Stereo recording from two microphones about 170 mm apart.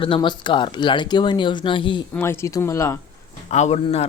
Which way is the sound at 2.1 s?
15° left (ahead or behind).